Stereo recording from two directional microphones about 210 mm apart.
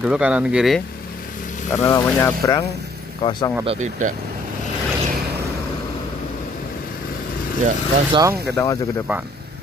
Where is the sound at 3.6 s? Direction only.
30° right (ahead or behind).